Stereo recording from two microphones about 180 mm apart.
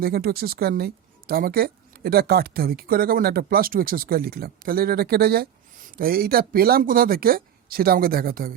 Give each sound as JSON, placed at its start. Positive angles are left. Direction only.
{"t": 0.0, "sound": "a woman's voice", "side_deg": -55}